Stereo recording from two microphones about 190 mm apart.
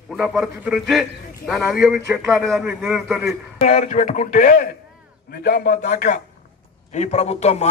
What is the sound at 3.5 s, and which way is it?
A man's voice, 40° left (ahead or behind).